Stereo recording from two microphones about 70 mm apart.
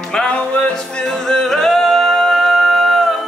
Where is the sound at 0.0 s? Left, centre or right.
Centre.